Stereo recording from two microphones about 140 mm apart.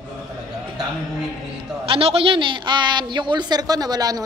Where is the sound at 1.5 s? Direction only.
40° right (ahead or behind).